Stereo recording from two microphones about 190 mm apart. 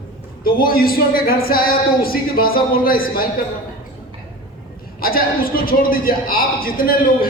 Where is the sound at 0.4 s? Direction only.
50° left (ahead or behind).